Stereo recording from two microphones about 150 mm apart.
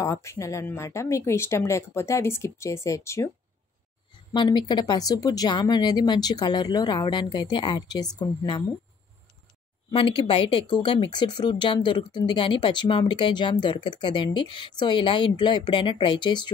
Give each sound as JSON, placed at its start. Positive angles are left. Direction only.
{"t": 0.0, "sound": "speech", "side_deg": 20}
{"t": 4.3, "sound": "speech", "side_deg": 30}
{"t": 9.8, "sound": "speech", "side_deg": 35}